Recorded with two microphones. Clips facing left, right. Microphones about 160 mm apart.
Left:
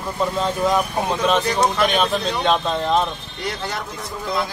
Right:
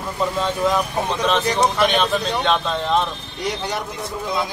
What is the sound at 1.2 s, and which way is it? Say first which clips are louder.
Speech: even; centre (ahead or behind).